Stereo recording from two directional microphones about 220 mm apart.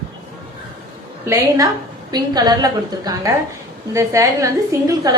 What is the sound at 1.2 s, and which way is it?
A woman's voice, 10° right (ahead or behind).